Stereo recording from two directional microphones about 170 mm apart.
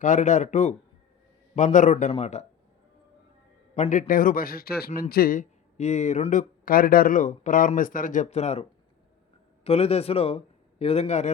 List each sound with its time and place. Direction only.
0.0 s speech: 45° left (ahead or behind)
3.8 s speech: 50° left (ahead or behind)
6.7 s speech: 55° left (ahead or behind); by 8.6 s 40° left (ahead or behind)
9.6 s a man's voice: 35° left (ahead or behind)